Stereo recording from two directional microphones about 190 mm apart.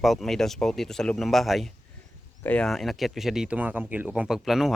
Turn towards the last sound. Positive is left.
turn(degrees=0)  # may be behind; listen again after turning